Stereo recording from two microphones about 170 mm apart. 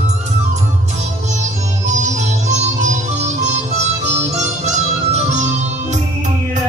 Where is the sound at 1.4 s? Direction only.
45° right (ahead or behind).